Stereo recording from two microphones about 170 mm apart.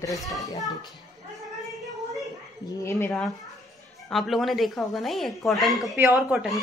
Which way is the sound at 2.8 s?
15° left (ahead or behind).